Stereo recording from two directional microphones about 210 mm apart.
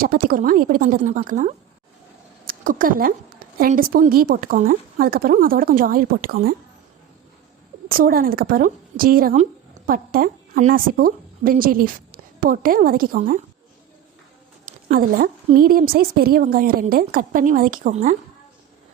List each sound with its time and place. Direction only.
0.0 s a woman's voice: 40° right (ahead or behind)
7.9 s a woman's voice: 45° right (ahead or behind)
14.8 s speech: 45° right (ahead or behind)